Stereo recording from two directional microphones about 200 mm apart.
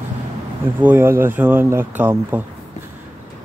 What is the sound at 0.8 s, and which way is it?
Speech, 10° right (ahead or behind).